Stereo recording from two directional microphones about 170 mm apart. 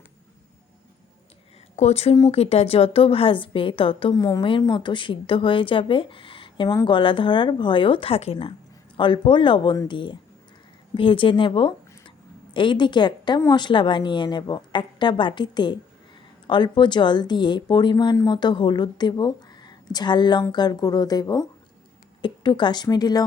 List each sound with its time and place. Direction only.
1.7 s a woman's voice: 40° left (ahead or behind); by 23.2 s 25° left (ahead or behind)